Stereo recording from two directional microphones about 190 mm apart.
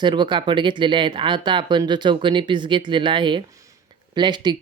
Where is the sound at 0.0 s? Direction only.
25° right (ahead or behind).